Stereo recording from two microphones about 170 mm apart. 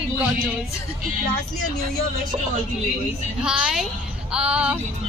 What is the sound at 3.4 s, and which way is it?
A woman's voice, 5° right (ahead or behind).